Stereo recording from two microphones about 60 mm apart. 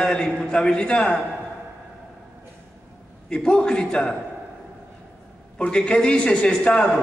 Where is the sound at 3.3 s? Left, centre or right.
Centre.